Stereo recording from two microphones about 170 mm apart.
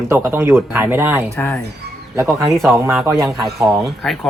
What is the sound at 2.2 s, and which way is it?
Speech, 15° right (ahead or behind).